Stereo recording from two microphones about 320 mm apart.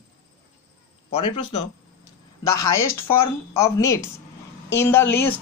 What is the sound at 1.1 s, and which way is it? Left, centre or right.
Speech, left.